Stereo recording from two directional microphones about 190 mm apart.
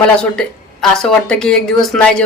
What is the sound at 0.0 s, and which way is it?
A woman's voice, 5° left (ahead or behind).